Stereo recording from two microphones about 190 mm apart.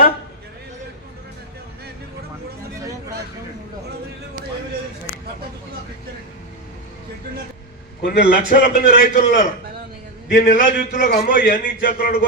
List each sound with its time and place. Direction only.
8.0 s a man's voice: 50° left (ahead or behind)